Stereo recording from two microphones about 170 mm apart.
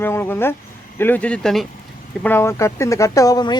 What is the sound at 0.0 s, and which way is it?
Speech, 10° left (ahead or behind).